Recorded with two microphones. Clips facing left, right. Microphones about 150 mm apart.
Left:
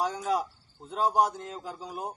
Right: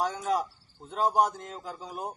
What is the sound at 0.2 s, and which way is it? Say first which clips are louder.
Speech: even; 5° left (ahead or behind).